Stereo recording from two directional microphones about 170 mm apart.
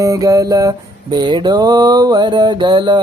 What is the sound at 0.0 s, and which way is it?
Mantra, 20° right (ahead or behind).